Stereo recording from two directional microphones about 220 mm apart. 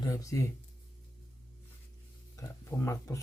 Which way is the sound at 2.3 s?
15° left (ahead or behind).